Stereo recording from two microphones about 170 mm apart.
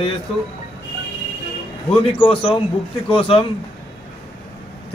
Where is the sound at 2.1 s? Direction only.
35° left (ahead or behind).